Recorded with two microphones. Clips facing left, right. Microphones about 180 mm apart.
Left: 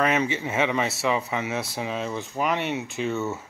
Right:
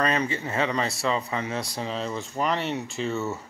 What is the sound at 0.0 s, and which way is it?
Speech, 10° left (ahead or behind).